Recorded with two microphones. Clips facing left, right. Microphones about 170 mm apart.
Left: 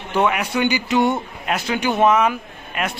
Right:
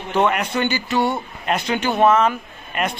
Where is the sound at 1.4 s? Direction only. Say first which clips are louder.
Right 1 dB; 5° left (ahead or behind).